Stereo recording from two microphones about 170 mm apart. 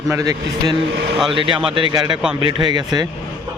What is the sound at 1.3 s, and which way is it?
A man's voice, 30° right (ahead or behind).